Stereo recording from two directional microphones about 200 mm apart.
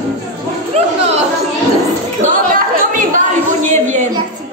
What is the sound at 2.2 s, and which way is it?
Chatter, 40° right (ahead or behind).